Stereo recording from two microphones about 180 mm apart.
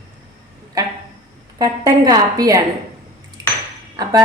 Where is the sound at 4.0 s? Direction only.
20° right (ahead or behind).